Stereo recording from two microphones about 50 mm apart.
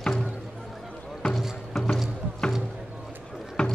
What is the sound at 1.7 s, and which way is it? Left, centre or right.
Music, centre.